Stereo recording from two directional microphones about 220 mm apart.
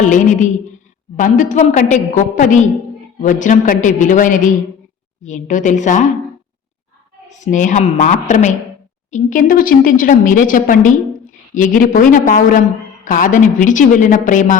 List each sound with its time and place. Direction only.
0.0 s a woman's voice: 35° left (ahead or behind)
7.3 s a woman's voice: 35° left (ahead or behind)